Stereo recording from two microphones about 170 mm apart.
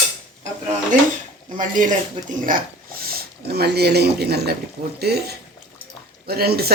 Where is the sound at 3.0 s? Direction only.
70° right (ahead or behind).